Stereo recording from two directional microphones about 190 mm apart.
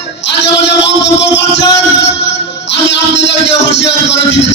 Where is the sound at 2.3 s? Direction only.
70° left (ahead or behind).